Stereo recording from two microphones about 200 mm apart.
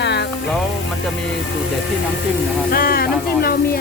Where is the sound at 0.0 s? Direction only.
60° left (ahead or behind).